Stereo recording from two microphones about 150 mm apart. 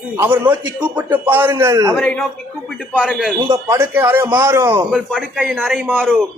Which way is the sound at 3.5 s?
15° right (ahead or behind).